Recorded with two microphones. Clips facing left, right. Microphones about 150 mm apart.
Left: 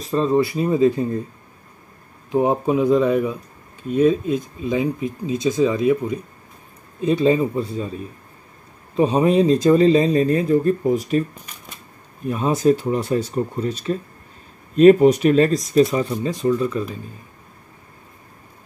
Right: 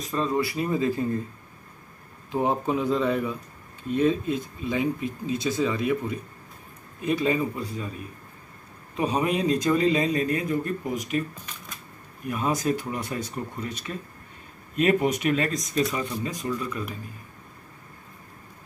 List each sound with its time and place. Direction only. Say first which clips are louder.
0.0 s speech: left 7 dB; 30° left (ahead or behind)
2.3 s speech: left 7 dB; 15° left (ahead or behind); by 11.2 s 35° left (ahead or behind)
12.3 s speech: left 8 dB; 25° left (ahead or behind)